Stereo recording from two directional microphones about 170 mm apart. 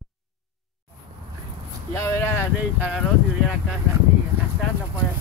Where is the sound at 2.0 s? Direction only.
15° left (ahead or behind).